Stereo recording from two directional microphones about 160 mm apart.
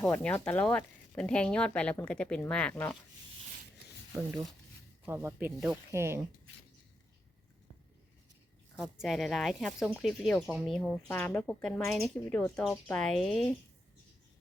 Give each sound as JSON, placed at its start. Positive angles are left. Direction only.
{"t": 0.0, "sound": "speech", "side_deg": 5}
{"t": 5.0, "sound": "speech", "side_deg": -15}
{"t": 8.8, "sound": "speech", "side_deg": 0}